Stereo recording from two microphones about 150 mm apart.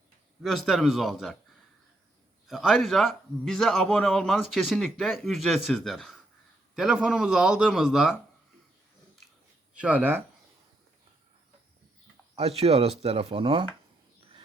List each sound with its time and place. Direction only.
0.4 s a man's voice: centre (ahead or behind)
2.5 s a man's voice: centre (ahead or behind)
9.7 s speech: 10° right (ahead or behind)
12.4 s speech: 40° right (ahead or behind)